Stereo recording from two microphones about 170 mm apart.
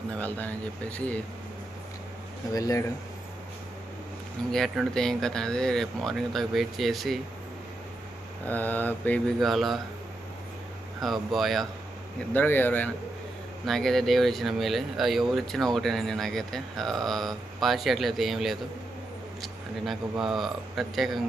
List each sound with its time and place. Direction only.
0.1 s mantra: 10° left (ahead or behind)
2.5 s speech: 20° left (ahead or behind)
4.5 s speech: centre (ahead or behind)
8.4 s mantra: 10° left (ahead or behind)
11.0 s speech: centre (ahead or behind)
12.3 s mantra: 10° left (ahead or behind)
13.7 s speech: centre (ahead or behind)